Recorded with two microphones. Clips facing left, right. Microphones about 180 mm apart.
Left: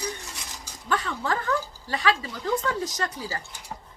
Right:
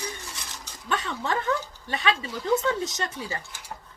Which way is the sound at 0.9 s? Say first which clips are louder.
Left 1 dB; 20° right (ahead or behind).